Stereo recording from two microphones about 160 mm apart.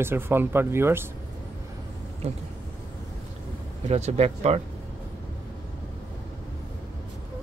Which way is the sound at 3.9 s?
40° right (ahead or behind).